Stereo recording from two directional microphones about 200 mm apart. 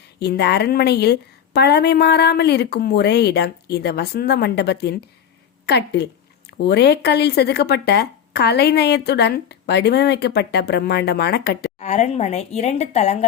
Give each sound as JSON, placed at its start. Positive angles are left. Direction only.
{"t": 0.2, "sound": "speech", "side_deg": 55}
{"t": 11.8, "sound": "a woman's voice", "side_deg": 35}